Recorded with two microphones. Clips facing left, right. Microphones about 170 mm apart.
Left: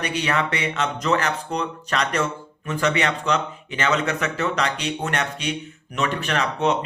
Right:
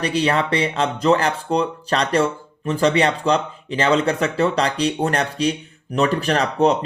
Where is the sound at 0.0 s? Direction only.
30° right (ahead or behind).